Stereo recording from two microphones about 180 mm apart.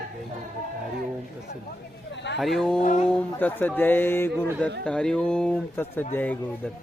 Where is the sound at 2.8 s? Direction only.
45° left (ahead or behind).